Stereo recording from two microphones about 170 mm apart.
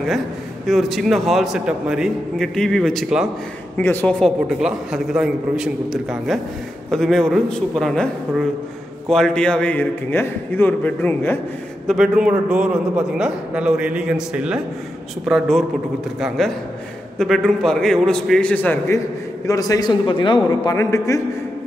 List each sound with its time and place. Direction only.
0.7 s a man's voice: centre (ahead or behind)
3.7 s a man's voice: 10° left (ahead or behind)
4.5 s a man's voice: 5° right (ahead or behind)
11.9 s a man's voice: 5° right (ahead or behind); by 21.2 s 15° left (ahead or behind)